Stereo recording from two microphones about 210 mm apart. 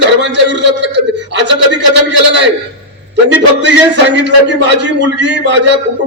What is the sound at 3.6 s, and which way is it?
A man's voice, 55° right (ahead or behind).